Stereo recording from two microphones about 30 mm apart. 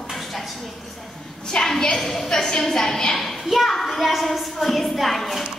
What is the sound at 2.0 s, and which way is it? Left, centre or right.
Speech, centre.